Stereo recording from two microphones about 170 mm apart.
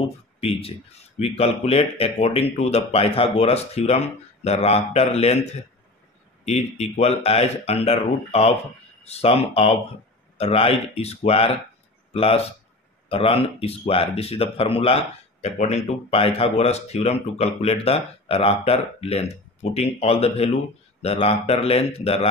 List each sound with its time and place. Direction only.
0.4 s speech: 35° left (ahead or behind)